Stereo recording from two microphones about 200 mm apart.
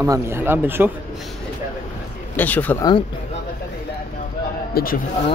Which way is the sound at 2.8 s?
25° left (ahead or behind).